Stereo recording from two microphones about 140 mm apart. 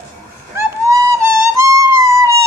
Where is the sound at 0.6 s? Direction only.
25° right (ahead or behind).